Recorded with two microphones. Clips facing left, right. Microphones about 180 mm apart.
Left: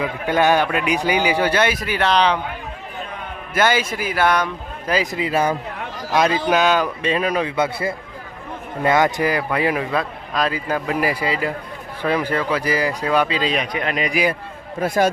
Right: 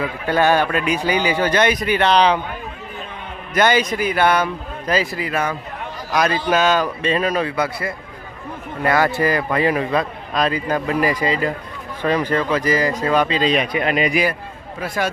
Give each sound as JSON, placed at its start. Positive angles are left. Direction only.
{"t": 0.0, "sound": "speech", "side_deg": 15}
{"t": 3.5, "sound": "speech", "side_deg": 5}
{"t": 4.9, "sound": "speech", "side_deg": 10}
{"t": 5.2, "sound": "speech", "side_deg": 30}
{"t": 7.5, "sound": "a man's voice", "side_deg": 25}
{"t": 13.7, "sound": "speech", "side_deg": -5}
{"t": 14.8, "sound": "a man's voice", "side_deg": 45}